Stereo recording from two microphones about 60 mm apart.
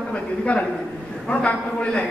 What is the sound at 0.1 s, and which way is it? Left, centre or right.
A man's voice, centre.